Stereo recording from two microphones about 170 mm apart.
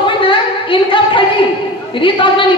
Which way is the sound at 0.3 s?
30° left (ahead or behind).